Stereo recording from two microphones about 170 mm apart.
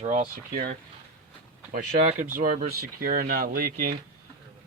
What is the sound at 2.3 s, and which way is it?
Speech, 55° right (ahead or behind).